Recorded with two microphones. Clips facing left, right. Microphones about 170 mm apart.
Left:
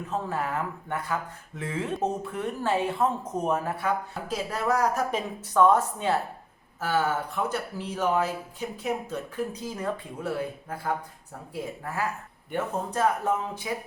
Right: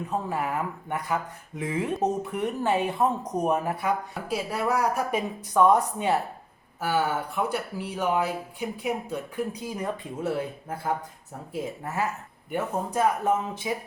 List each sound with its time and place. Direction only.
0.1 s speech: 15° right (ahead or behind)
12.5 s speech: 10° right (ahead or behind)